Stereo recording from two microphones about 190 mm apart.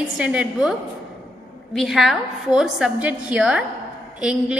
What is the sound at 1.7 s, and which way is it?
A woman's voice, centre (ahead or behind).